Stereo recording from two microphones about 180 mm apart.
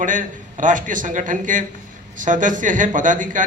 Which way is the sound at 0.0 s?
45° right (ahead or behind).